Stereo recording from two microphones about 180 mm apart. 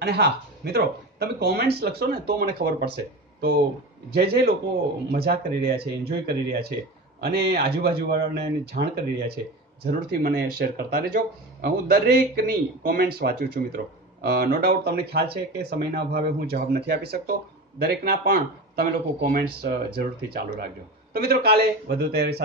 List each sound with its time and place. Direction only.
0.0 s speech: 60° right (ahead or behind)
4.1 s speech: 60° right (ahead or behind)